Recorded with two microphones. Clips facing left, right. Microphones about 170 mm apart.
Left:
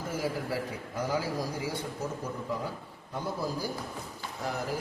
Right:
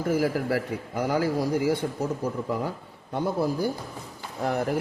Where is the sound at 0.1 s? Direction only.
65° right (ahead or behind).